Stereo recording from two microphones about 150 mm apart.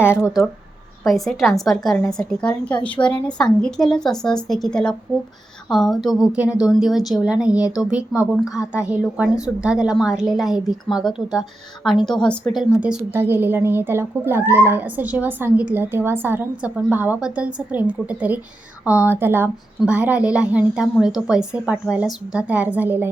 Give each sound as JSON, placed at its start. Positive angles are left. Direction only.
{"t": 0.0, "sound": "speech", "side_deg": 15}
{"t": 1.0, "sound": "a woman's voice", "side_deg": 0}
{"t": 12.7, "sound": "a woman's voice", "side_deg": -10}